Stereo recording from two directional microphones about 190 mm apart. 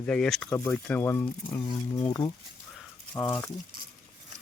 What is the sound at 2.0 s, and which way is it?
Speech, 25° left (ahead or behind).